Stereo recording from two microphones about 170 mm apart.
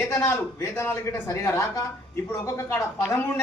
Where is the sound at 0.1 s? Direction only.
15° left (ahead or behind).